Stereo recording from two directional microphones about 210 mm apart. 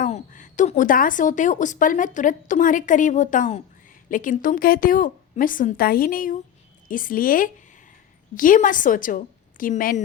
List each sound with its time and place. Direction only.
0.0 s a woman's voice: 35° left (ahead or behind)